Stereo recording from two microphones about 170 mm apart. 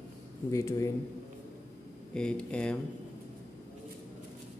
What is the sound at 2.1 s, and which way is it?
Speech, 5° left (ahead or behind).